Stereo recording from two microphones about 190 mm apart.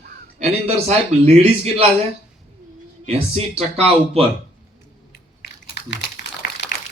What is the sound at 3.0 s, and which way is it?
Speech, 35° right (ahead or behind).